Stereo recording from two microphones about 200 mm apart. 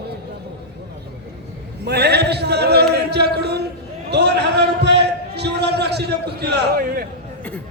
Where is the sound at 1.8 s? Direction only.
55° right (ahead or behind).